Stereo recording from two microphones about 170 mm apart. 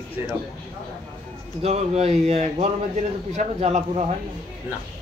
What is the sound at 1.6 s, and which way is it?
Speech, 40° right (ahead or behind).